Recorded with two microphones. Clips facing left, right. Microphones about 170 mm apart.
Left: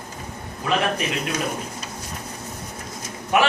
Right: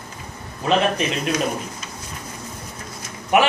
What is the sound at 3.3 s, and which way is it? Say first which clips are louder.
Speech: right 2 dB; 20° right (ahead or behind).